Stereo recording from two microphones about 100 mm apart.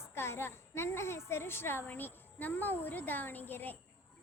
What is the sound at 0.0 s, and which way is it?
A child's voice, 25° left (ahead or behind).